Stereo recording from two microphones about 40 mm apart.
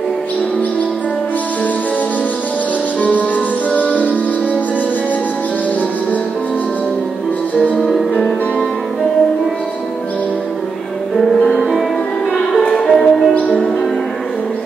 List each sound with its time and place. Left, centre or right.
3.0 s music: left
11.1 s music: centre
11.5 s music: centre
12.8 s music: centre
13.3 s music: left